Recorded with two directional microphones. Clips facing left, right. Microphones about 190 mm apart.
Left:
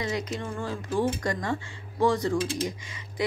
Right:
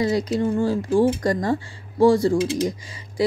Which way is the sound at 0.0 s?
35° right (ahead or behind).